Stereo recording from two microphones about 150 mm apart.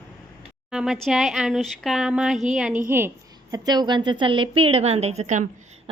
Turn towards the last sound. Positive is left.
turn(degrees=-50)  # may be behind; listen again after turning